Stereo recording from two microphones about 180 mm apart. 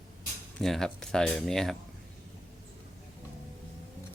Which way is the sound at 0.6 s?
Centre (ahead or behind).